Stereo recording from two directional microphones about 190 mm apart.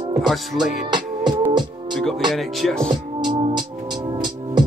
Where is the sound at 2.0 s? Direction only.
Centre (ahead or behind).